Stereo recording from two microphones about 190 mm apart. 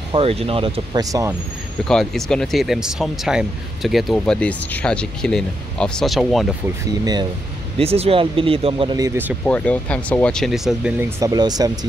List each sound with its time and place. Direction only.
0.1 s speech: 30° right (ahead or behind)
1.0 s speech: 15° right (ahead or behind)
1.9 s speech: 5° left (ahead or behind)
7.8 s speech: 30° right (ahead or behind)
9.4 s speech: 5° left (ahead or behind)
11.1 s speech: 20° right (ahead or behind)